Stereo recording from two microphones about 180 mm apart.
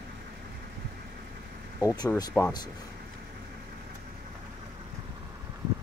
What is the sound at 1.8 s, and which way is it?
Speech, 15° left (ahead or behind).